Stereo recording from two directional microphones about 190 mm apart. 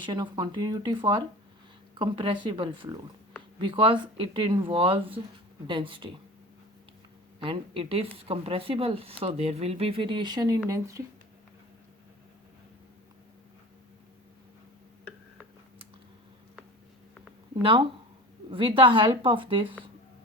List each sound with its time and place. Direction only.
0.0 s a woman's voice: 20° right (ahead or behind)
7.3 s a woman's voice: 25° right (ahead or behind)
17.6 s a woman's voice: 25° right (ahead or behind)